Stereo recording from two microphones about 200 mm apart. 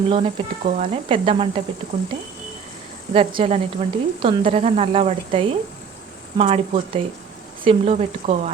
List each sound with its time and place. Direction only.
0.1 s a woman's voice: 30° right (ahead or behind)
3.1 s a woman's voice: 30° right (ahead or behind)